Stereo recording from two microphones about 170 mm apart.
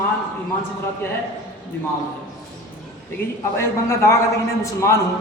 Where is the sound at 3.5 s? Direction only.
15° left (ahead or behind).